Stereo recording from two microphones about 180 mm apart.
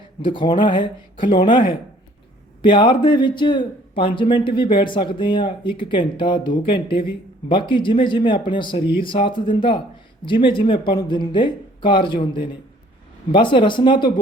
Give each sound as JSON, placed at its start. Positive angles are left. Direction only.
{"t": 0.2, "sound": "speech", "side_deg": 25}